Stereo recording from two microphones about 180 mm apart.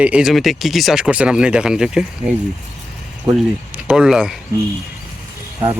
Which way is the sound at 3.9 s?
5° right (ahead or behind).